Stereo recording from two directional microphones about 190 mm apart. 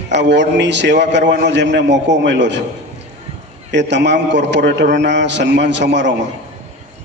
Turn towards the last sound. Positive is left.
turn(degrees=-65)  # may be behind; listen again after turning